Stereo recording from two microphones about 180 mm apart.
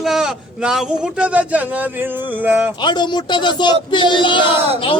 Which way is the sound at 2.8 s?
25° left (ahead or behind).